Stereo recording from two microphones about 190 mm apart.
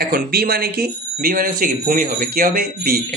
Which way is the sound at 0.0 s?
50° right (ahead or behind).